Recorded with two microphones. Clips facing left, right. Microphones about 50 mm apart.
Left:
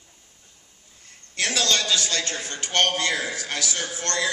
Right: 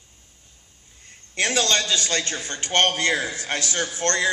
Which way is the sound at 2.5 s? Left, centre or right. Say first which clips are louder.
Right 2 dB; right.